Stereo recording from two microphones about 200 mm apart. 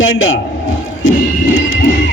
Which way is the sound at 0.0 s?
75° left (ahead or behind).